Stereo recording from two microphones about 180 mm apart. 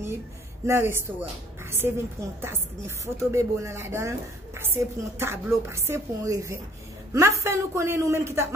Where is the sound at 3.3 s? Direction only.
15° right (ahead or behind).